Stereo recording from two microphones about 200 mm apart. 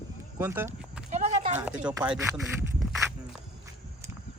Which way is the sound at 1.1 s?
35° right (ahead or behind).